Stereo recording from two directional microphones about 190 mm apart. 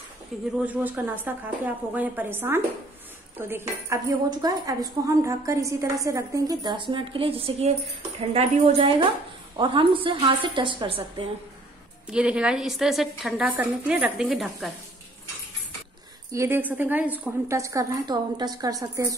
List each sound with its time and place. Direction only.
0.3 s a woman's voice: centre (ahead or behind); by 11.2 s 30° right (ahead or behind)
12.1 s a woman's voice: 5° right (ahead or behind)
16.3 s a woman's voice: 15° right (ahead or behind)